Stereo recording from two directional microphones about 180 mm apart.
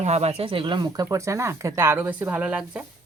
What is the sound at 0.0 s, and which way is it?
Speech, 35° right (ahead or behind).